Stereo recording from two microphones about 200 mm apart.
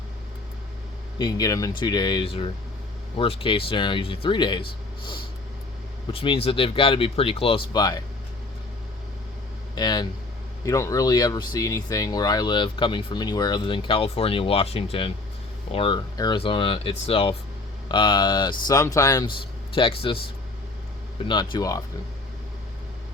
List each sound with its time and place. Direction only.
1.2 s speech: 20° left (ahead or behind)
9.7 s speech: 20° left (ahead or behind)
21.2 s speech: 20° left (ahead or behind)